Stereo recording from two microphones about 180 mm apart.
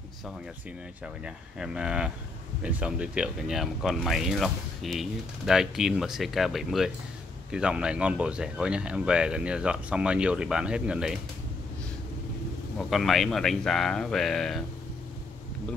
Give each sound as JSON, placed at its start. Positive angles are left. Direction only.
{"t": 1.0, "sound": "speech", "side_deg": -5}
{"t": 12.7, "sound": "speech", "side_deg": 0}